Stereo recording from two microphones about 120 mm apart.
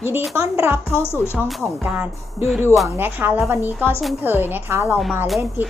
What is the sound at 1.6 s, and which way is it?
A child's voice, 20° right (ahead or behind).